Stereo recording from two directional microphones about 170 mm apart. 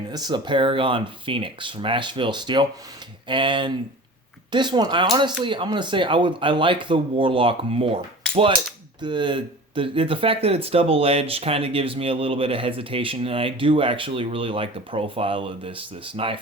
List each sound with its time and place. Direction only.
0.1 s speech: 25° right (ahead or behind)
9.0 s speech: 30° right (ahead or behind)